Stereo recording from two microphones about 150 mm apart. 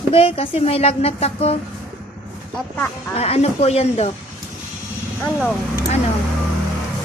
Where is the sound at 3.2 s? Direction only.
45° left (ahead or behind).